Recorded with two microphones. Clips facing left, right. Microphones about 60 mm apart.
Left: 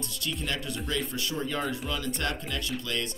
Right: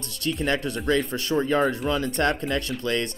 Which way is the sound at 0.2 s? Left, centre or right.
Right.